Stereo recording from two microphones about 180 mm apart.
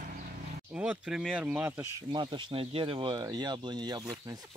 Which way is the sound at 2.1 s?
25° right (ahead or behind).